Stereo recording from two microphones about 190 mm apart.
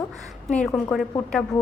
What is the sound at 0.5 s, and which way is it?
Speech, 5° left (ahead or behind).